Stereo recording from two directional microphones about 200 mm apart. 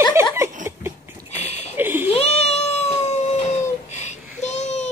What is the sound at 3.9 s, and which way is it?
Child singing, 35° left (ahead or behind).